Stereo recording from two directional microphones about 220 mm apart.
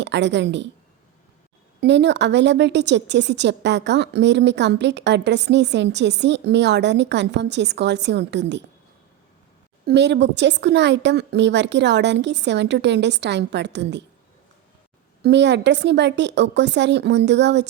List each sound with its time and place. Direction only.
0.0 s a woman's voice: 55° right (ahead or behind)
1.8 s a woman's voice: 50° right (ahead or behind)
9.8 s a woman's voice: 50° right (ahead or behind)
15.2 s a woman's voice: 50° right (ahead or behind)